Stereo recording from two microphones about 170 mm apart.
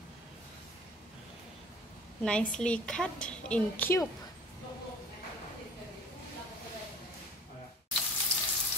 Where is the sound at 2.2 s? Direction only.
5° left (ahead or behind).